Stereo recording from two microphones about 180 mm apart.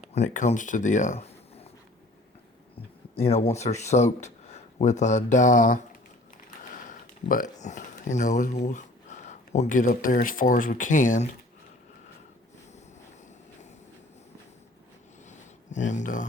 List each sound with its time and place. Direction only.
0.1 s speech: 40° left (ahead or behind)
3.2 s speech: 35° left (ahead or behind)
15.3 s a sound: 40° left (ahead or behind)